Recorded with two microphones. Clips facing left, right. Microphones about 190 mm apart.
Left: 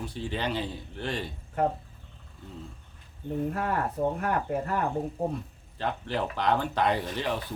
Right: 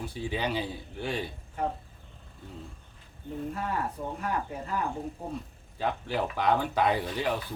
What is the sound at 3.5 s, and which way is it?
Speech, 60° left (ahead or behind).